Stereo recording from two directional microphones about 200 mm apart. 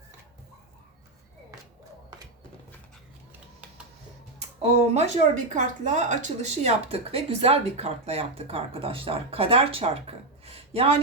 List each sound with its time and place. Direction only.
4.4 s speech: 30° right (ahead or behind)